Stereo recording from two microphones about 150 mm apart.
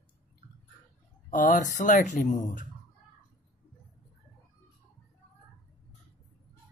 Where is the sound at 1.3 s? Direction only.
60° left (ahead or behind).